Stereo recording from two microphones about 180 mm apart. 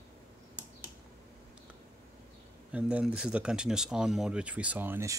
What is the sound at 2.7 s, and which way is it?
Speech, 5° right (ahead or behind).